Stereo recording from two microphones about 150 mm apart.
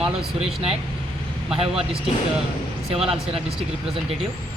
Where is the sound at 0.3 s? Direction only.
40° right (ahead or behind).